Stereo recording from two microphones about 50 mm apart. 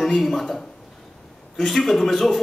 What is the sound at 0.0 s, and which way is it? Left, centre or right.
A man's voice, centre.